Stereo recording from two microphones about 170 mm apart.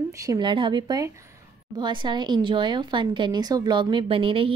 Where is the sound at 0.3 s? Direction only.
25° right (ahead or behind).